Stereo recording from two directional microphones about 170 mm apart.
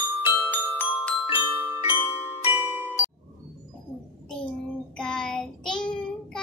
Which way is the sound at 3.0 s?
15° left (ahead or behind).